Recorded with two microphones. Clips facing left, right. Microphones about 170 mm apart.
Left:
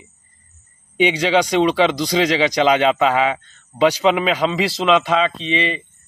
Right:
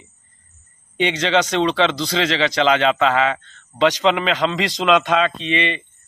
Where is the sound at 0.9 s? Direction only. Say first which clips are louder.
Left 2 dB; 10° left (ahead or behind).